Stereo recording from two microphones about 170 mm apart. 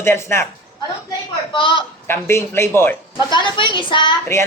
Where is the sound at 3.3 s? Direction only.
30° left (ahead or behind).